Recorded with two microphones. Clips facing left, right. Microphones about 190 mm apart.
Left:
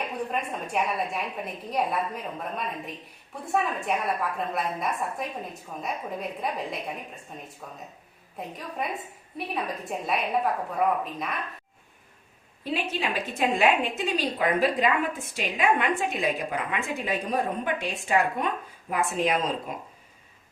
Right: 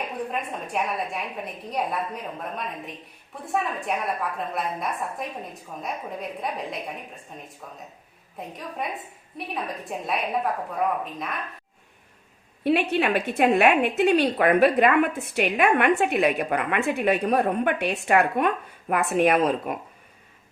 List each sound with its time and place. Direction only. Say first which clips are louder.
0.3 s a woman's voice: even; centre (ahead or behind)
12.6 s a woman's voice: right 8 dB; 65° right (ahead or behind)